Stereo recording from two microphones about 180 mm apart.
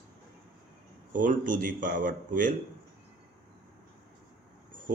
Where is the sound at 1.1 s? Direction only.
45° right (ahead or behind).